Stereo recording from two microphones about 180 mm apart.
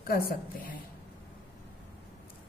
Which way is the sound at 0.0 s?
55° left (ahead or behind).